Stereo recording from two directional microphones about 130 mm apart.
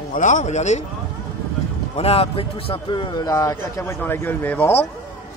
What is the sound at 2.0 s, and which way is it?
A man's voice, 50° left (ahead or behind).